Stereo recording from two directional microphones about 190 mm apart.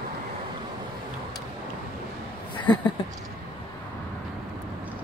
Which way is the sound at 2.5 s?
25° left (ahead or behind).